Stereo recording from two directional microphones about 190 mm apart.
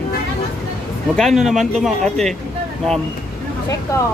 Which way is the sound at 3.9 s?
15° left (ahead or behind).